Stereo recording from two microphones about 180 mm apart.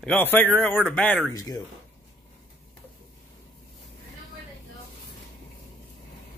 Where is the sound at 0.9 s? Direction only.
5° left (ahead or behind).